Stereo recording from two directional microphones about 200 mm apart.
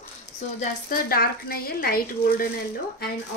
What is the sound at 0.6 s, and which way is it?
Speech, 45° left (ahead or behind).